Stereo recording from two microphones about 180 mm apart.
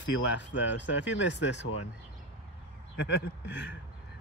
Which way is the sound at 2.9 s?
85° left.